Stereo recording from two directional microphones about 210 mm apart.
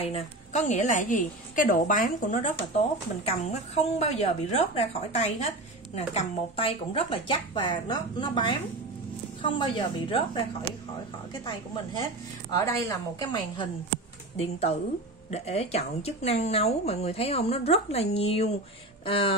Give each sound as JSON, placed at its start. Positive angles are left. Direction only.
{"t": 0.0, "sound": "a woman's voice", "side_deg": 30}
{"t": 9.6, "sound": "a woman's voice", "side_deg": 25}
{"t": 12.6, "sound": "a woman's voice", "side_deg": 15}